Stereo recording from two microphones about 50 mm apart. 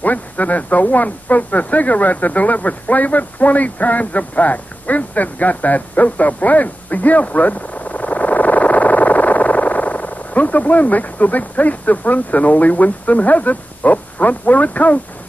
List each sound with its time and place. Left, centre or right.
0.0 s speech: left